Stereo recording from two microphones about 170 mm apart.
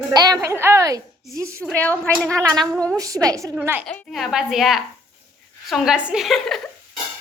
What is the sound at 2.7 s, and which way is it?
Speech, centre (ahead or behind).